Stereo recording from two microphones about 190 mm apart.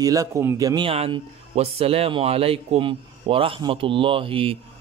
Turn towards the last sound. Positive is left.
turn(degrees=-30)  # may be behind; listen again after turning